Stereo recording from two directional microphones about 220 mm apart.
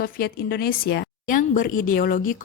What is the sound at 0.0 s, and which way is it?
Speech, 45° left (ahead or behind).